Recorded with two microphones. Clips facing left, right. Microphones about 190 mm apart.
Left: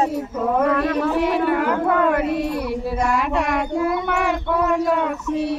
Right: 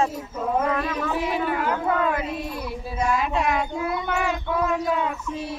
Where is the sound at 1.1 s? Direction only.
65° left (ahead or behind).